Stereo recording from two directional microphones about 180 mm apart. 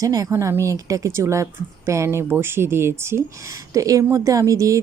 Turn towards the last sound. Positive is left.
turn(degrees=-15)  # may be behind; listen again after turning